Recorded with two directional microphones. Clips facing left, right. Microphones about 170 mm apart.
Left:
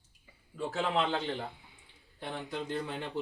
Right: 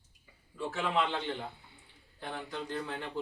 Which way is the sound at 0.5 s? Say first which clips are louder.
Left 1 dB; 35° left (ahead or behind).